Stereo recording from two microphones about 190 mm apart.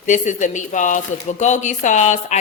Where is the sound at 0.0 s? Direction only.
40° left (ahead or behind).